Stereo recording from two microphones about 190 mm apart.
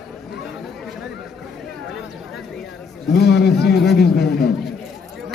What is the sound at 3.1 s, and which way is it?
A man's voice, 60° left (ahead or behind).